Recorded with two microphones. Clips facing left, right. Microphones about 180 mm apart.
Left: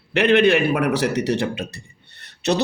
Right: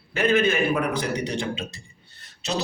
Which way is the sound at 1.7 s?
65° left (ahead or behind).